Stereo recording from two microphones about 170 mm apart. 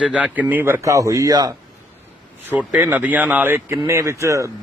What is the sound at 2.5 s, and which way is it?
Speech, 10° right (ahead or behind).